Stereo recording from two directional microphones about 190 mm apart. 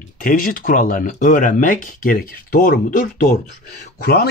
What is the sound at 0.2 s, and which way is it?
Speech, 45° left (ahead or behind).